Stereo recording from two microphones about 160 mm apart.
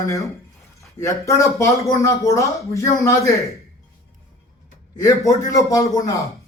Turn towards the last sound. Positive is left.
turn(degrees=20)  # may be behind; listen again after turning